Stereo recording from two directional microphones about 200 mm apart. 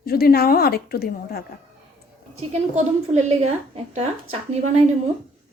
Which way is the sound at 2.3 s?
35° right (ahead or behind).